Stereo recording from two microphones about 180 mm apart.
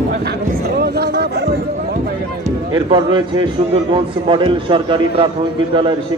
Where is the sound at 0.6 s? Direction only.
60° right (ahead or behind).